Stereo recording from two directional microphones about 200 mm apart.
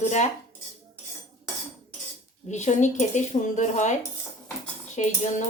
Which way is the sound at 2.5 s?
35° left (ahead or behind).